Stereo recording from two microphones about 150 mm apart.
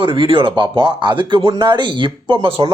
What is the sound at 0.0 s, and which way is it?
Speech, 35° right (ahead or behind).